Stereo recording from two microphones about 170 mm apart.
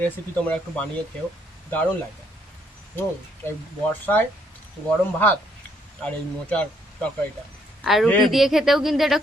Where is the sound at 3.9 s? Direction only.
10° left (ahead or behind).